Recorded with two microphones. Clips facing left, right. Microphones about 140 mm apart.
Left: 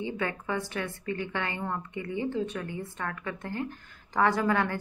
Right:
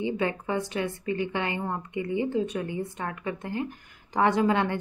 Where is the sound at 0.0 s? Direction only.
20° right (ahead or behind).